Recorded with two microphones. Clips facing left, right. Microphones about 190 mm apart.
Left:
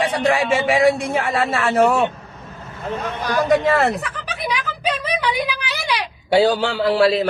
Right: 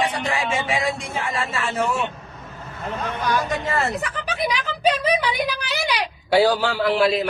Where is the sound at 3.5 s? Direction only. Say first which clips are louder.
Left 8 dB; 70° left (ahead or behind).